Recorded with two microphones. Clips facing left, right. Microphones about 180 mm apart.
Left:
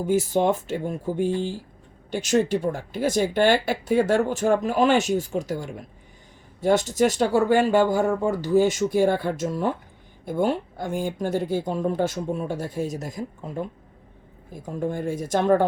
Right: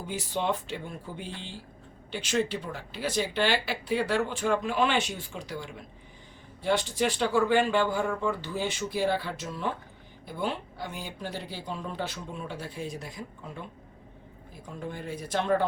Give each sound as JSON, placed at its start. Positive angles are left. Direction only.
{"t": 0.0, "sound": "speech", "side_deg": 45}